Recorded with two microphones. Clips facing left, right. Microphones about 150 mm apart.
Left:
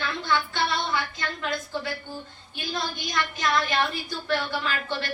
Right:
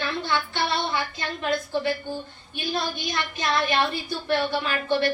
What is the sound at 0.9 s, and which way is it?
A woman's voice, 20° right (ahead or behind).